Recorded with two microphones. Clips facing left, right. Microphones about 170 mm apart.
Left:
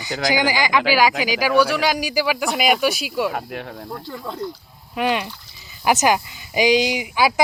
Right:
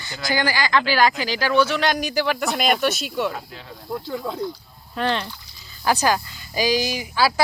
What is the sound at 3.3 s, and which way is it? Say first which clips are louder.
Speech: left 7 dB; 65° left (ahead or behind).